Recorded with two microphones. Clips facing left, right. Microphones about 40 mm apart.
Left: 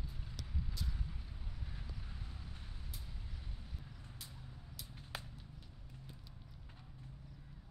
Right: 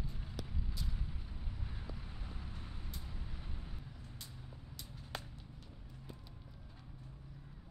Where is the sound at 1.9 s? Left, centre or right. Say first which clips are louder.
Right 3 dB; right.